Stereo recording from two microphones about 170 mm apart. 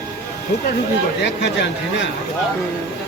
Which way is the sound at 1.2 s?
90° left.